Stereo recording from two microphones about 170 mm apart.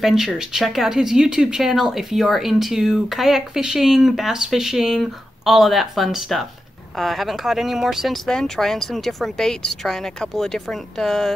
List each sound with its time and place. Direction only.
0.0 s speech: centre (ahead or behind)